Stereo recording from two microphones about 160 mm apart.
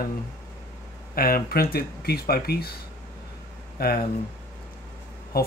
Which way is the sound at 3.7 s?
70° left (ahead or behind).